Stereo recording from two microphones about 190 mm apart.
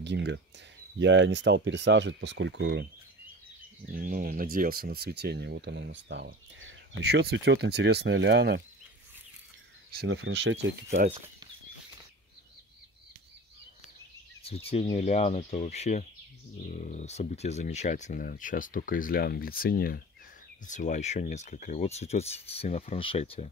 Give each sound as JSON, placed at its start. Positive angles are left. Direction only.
{"t": 0.0, "sound": "speech", "side_deg": -65}
{"t": 3.9, "sound": "speech", "side_deg": -50}
{"t": 10.0, "sound": "speech", "side_deg": -75}
{"t": 11.1, "sound": "speech", "side_deg": -30}
{"t": 14.4, "sound": "speech", "side_deg": 30}